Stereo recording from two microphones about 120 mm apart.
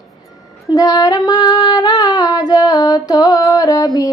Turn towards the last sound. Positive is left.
turn(degrees=30)  # may be behind; listen again after turning